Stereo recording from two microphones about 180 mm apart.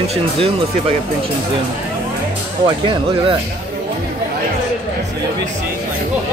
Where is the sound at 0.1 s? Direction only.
30° right (ahead or behind).